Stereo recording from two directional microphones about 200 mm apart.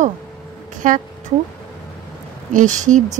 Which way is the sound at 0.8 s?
40° right (ahead or behind).